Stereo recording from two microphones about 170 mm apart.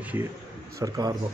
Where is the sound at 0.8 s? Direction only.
20° right (ahead or behind).